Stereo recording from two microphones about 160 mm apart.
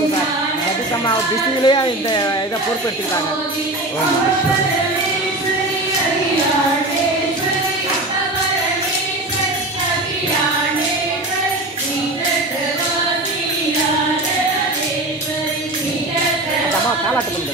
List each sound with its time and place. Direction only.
1.6 s speech: 25° left (ahead or behind)